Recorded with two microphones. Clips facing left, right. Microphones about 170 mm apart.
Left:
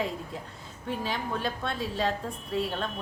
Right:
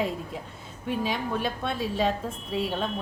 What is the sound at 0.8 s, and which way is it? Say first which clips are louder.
A woman's voice: right 3 dB; 15° right (ahead or behind).